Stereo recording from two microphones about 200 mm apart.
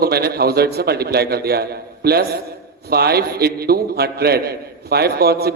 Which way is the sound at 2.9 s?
50° right (ahead or behind).